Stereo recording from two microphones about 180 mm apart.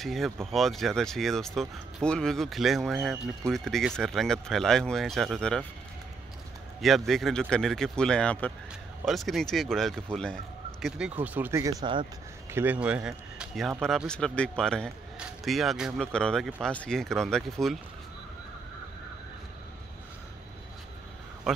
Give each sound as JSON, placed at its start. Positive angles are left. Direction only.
{"t": 0.0, "sound": "speech", "side_deg": 0}
{"t": 6.8, "sound": "speech", "side_deg": 0}
{"t": 11.8, "sound": "speech", "side_deg": -25}
{"t": 12.5, "sound": "speech", "side_deg": -10}